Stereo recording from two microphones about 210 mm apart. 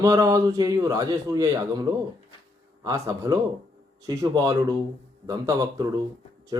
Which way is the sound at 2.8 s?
15° right (ahead or behind).